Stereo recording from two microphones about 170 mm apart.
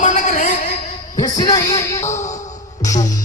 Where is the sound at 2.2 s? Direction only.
45° left (ahead or behind).